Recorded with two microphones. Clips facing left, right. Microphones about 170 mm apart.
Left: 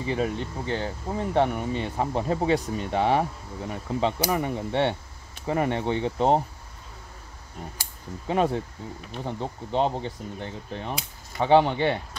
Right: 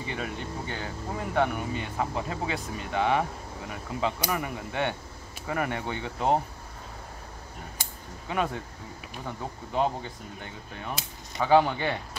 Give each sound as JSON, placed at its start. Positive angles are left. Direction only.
{"t": 0.0, "sound": "speech", "side_deg": 35}
{"t": 8.3, "sound": "speech", "side_deg": 30}